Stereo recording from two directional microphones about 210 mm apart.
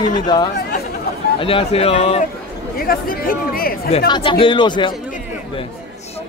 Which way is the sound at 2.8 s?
45° left (ahead or behind).